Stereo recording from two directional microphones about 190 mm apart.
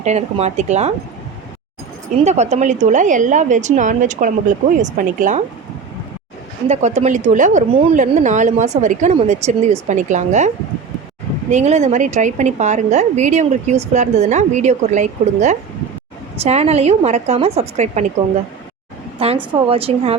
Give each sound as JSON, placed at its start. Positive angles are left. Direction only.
{"t": 0.0, "sound": "a woman's voice", "side_deg": -35}
{"t": 2.2, "sound": "a woman's voice", "side_deg": -35}
{"t": 6.7, "sound": "a woman's voice", "side_deg": -35}
{"t": 11.5, "sound": "a woman's voice", "side_deg": -35}
{"t": 19.2, "sound": "a woman's voice", "side_deg": -30}